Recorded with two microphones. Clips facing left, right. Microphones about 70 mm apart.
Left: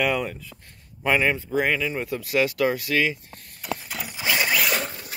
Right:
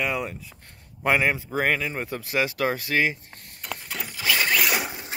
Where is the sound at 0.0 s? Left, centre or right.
Centre.